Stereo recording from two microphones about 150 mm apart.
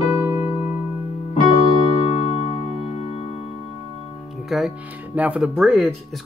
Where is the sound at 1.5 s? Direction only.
40° left (ahead or behind).